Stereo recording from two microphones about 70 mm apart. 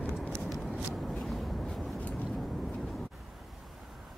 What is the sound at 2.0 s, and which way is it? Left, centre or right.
Vehicle, left.